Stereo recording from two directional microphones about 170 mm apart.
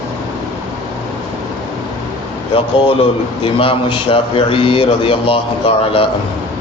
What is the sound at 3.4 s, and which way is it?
A man's voice, 30° left (ahead or behind).